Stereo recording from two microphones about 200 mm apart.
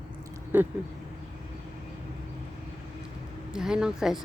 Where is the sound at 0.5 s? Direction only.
10° right (ahead or behind).